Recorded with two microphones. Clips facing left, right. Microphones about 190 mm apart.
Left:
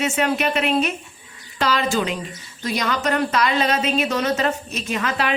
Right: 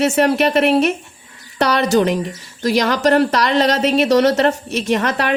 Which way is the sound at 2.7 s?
85° right.